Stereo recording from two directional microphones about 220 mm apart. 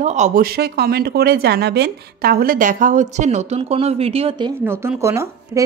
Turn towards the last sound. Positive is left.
turn(degrees=-15)  # may be behind; listen again after turning